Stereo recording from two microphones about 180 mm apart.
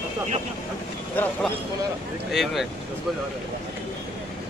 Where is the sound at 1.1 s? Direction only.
10° left (ahead or behind).